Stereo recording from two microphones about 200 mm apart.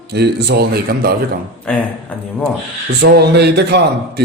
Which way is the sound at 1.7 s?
5° left (ahead or behind).